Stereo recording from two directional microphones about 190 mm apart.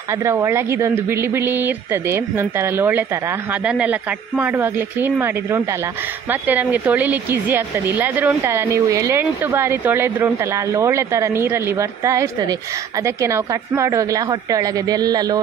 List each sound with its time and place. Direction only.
0.2 s a woman's voice: 15° right (ahead or behind)